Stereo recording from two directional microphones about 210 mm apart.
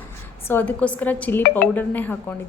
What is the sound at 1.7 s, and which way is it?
Speech, 10° left (ahead or behind).